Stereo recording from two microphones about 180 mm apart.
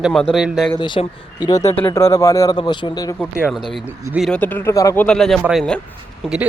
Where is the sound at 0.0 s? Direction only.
Centre (ahead or behind).